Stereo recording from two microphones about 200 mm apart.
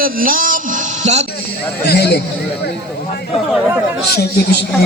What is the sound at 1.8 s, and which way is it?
Speech, 50° left (ahead or behind).